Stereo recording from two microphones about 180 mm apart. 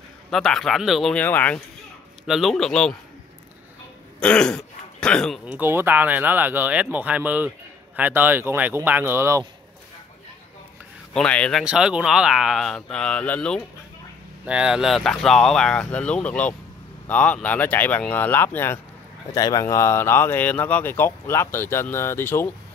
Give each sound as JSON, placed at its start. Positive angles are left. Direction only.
{"t": 0.3, "sound": "speech", "side_deg": 0}
{"t": 2.2, "sound": "speech", "side_deg": 0}
{"t": 4.2, "sound": "speech", "side_deg": 5}
{"t": 5.5, "sound": "speech", "side_deg": -10}
{"t": 11.1, "sound": "speech", "side_deg": 5}
{"t": 11.6, "sound": "speech", "side_deg": -5}
{"t": 14.4, "sound": "speech", "side_deg": -5}